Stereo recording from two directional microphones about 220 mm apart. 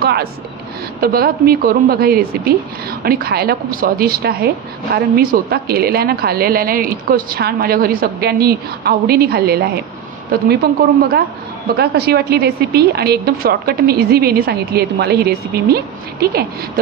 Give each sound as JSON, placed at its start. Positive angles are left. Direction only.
{"t": 0.0, "sound": "a woman's voice", "side_deg": -45}